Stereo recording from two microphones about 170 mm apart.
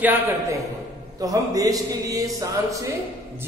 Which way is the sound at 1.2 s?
20° right (ahead or behind).